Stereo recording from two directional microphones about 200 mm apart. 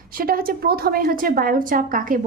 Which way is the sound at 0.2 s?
45° right (ahead or behind).